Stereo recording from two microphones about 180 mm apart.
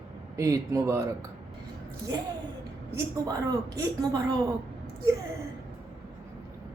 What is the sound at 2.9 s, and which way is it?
A woman's voice, 20° right (ahead or behind).